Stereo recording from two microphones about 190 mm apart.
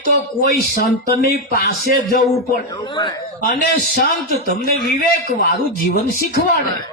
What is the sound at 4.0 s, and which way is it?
Speech, 55° left (ahead or behind).